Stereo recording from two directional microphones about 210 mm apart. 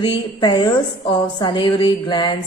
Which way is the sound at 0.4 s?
20° left (ahead or behind).